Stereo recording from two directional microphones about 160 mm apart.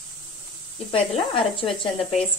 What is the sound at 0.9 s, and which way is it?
Speech, 35° left (ahead or behind).